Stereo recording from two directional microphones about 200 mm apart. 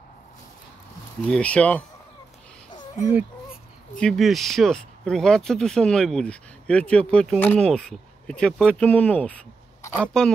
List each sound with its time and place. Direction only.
1.2 s speech: 5° left (ahead or behind)
2.7 s a sound: 20° left (ahead or behind)
3.9 s speech: 5° left (ahead or behind)